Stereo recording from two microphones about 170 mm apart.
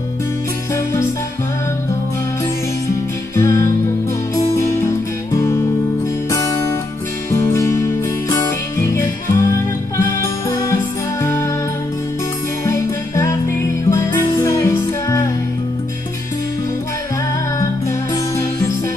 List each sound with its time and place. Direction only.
3.3 s music: 15° left (ahead or behind)
5.3 s music: 15° left (ahead or behind)
7.2 s music: 15° left (ahead or behind)
12.6 s music: 20° left (ahead or behind)